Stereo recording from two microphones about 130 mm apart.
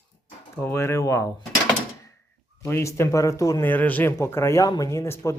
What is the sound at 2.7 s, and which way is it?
Speech, 20° left (ahead or behind).